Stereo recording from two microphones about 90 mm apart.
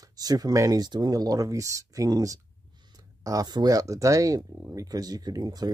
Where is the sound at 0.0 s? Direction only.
45° right (ahead or behind).